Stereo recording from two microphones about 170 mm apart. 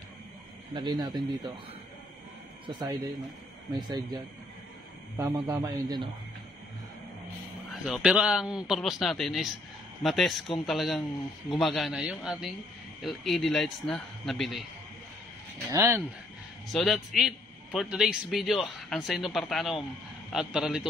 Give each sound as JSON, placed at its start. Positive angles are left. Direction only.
{"t": 0.7, "sound": "a man's voice", "side_deg": -25}
{"t": 2.6, "sound": "a man's voice", "side_deg": -25}
{"t": 7.7, "sound": "a man's voice", "side_deg": -5}
{"t": 15.7, "sound": "speech", "side_deg": -15}
{"t": 16.7, "sound": "a man's voice", "side_deg": 0}